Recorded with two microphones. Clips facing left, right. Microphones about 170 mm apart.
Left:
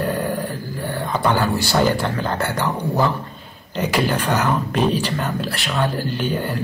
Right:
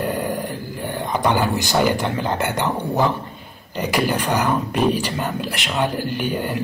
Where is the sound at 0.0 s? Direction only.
15° right (ahead or behind).